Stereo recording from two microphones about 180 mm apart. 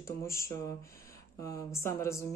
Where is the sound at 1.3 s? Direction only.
20° left (ahead or behind).